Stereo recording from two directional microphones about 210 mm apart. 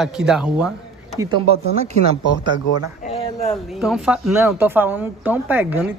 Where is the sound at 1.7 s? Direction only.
30° right (ahead or behind).